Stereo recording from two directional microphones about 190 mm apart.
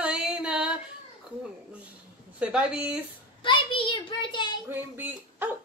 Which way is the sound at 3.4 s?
25° left (ahead or behind).